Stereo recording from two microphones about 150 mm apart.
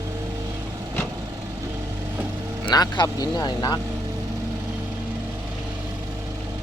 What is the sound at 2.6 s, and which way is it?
Speech, 30° left (ahead or behind).